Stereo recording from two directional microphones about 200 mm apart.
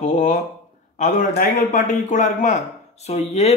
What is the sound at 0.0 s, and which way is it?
A man's voice, 35° left (ahead or behind).